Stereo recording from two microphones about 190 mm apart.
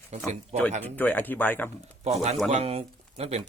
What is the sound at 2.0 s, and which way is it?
Speech, 35° right (ahead or behind).